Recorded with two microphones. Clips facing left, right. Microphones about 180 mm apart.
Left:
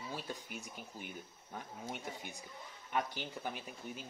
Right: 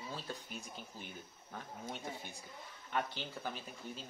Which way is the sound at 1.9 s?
15° left (ahead or behind).